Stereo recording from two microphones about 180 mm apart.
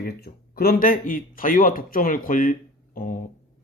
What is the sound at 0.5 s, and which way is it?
Speech, 55° left (ahead or behind).